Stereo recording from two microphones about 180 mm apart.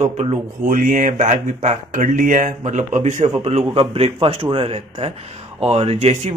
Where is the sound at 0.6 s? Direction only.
50° right (ahead or behind).